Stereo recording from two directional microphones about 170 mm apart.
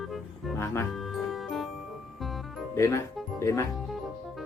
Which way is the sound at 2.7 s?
15° left (ahead or behind).